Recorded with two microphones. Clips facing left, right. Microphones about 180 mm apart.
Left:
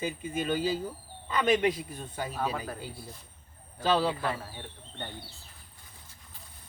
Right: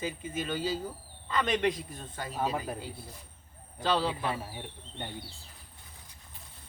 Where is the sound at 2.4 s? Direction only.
15° right (ahead or behind).